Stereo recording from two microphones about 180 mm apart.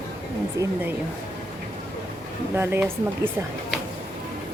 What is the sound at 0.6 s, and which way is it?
Speech, 15° right (ahead or behind).